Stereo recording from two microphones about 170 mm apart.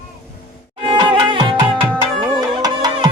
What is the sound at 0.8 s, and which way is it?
Music, 30° right (ahead or behind).